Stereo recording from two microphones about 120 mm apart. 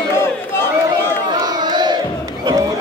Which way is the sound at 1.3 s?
35° right (ahead or behind).